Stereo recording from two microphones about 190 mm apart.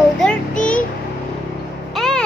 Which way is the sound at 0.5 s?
45° left (ahead or behind).